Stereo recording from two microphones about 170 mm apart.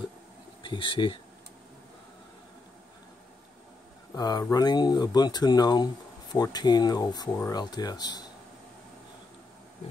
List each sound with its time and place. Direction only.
0.6 s speech: 30° left (ahead or behind)
4.1 s speech: 20° left (ahead or behind)